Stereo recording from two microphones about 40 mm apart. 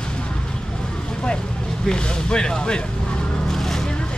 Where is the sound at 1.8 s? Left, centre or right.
Centre.